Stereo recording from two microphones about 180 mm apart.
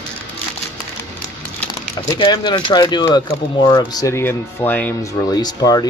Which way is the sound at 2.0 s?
25° left (ahead or behind).